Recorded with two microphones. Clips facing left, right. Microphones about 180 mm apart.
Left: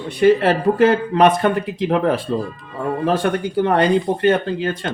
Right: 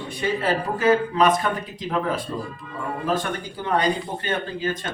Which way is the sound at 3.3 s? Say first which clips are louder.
Left 8 dB; 65° left (ahead or behind).